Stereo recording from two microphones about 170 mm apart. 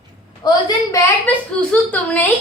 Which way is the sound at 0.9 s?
15° left (ahead or behind).